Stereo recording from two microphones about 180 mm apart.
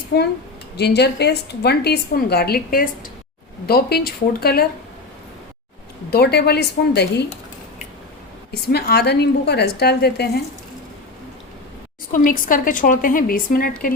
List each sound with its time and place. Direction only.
0.1 s a woman's voice: 65° left (ahead or behind)
6.1 s a woman's voice: 60° left (ahead or behind)
8.7 s a woman's voice: 65° left (ahead or behind)
12.1 s a woman's voice: 50° left (ahead or behind)